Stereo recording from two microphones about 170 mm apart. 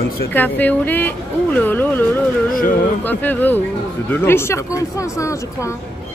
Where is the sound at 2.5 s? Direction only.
55° left (ahead or behind).